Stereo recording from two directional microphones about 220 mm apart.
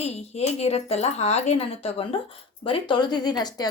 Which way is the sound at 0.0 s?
30° left (ahead or behind).